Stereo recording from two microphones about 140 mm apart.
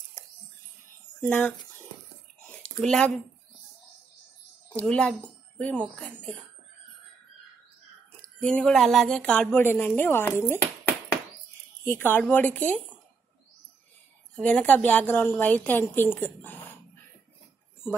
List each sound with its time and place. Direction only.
1.2 s a woman's voice: 10° left (ahead or behind)
2.8 s speech: 5° left (ahead or behind)
4.7 s a woman's voice: 5° left (ahead or behind)
8.2 s a woman's voice: 5° left (ahead or behind)
10.5 s a sound: 15° left (ahead or behind)
11.8 s a woman's voice: 15° left (ahead or behind)
14.3 s a woman's voice: 10° left (ahead or behind)